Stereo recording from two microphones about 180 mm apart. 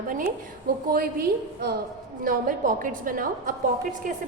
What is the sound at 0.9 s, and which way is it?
Speech, 55° right (ahead or behind).